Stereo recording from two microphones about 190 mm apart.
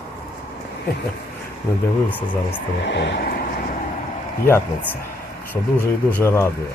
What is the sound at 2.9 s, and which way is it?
Vehicle, 65° left (ahead or behind).